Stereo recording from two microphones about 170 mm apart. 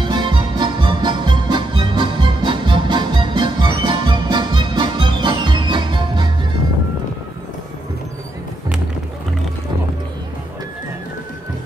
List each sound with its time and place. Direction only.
0.0 s music: 30° right (ahead or behind)